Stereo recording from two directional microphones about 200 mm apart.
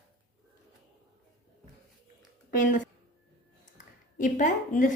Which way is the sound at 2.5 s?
40° left (ahead or behind).